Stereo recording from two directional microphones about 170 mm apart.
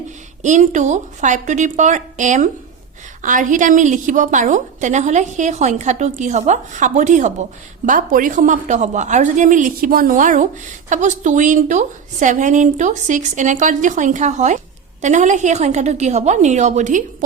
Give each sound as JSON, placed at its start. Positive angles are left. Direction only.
{"t": 0.4, "sound": "speech", "side_deg": -45}